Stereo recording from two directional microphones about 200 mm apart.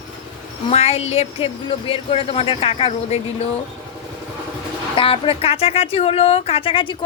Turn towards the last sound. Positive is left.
turn(degrees=25)  # may be behind; listen again after turning